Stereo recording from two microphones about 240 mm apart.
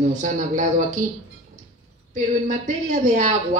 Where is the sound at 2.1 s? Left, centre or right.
Right.